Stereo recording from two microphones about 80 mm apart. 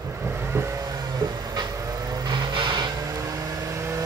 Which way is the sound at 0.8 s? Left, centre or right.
Right.